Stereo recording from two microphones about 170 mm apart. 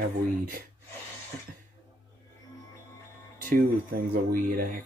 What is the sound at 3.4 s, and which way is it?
Speech, 55° right (ahead or behind).